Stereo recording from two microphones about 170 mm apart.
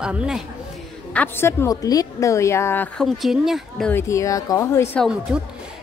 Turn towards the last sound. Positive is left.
turn(degrees=-5)  # may be behind; listen again after turning